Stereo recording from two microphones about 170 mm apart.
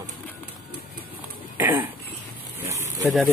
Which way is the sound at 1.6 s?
10° right (ahead or behind).